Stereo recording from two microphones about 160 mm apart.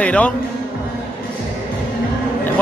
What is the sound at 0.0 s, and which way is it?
Speech, 10° left (ahead or behind).